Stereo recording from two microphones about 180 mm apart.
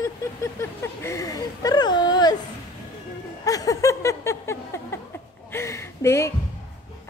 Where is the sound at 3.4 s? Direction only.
20° left (ahead or behind).